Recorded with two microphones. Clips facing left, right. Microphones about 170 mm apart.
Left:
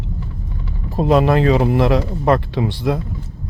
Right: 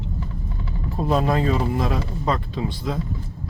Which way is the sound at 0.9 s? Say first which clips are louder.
Left 7 dB; 80° left.